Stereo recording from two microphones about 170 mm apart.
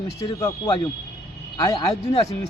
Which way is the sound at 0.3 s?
20° left (ahead or behind).